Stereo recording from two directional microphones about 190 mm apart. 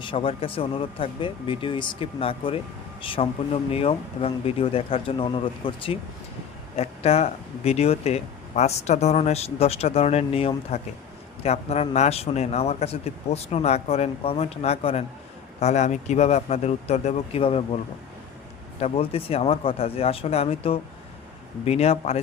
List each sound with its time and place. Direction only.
0.0 s speech: 25° left (ahead or behind)
18.8 s speech: 30° left (ahead or behind)